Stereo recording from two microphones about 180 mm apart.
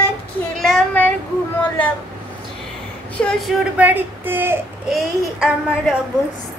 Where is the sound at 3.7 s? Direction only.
10° right (ahead or behind).